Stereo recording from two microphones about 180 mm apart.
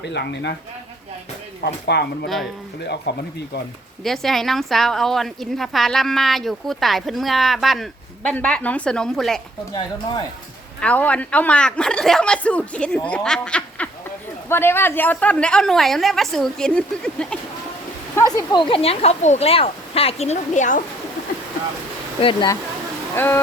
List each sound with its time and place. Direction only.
0.0 s speech: 70° left (ahead or behind)
1.6 s speech: 65° left (ahead or behind)
2.2 s a woman's voice: centre (ahead or behind)
2.8 s speech: 70° left (ahead or behind)
4.0 s a woman's voice: centre (ahead or behind)
10.8 s a woman's voice: 5° left (ahead or behind)
18.2 s speech: 20° left (ahead or behind); by 20.8 s 45° left (ahead or behind)
22.2 s speech: 25° left (ahead or behind)
23.1 s speech: 10° left (ahead or behind)